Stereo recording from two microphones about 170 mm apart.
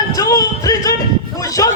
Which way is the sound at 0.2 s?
20° left (ahead or behind).